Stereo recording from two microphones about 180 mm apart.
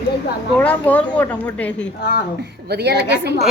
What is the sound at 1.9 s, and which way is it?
Speech, 65° left (ahead or behind).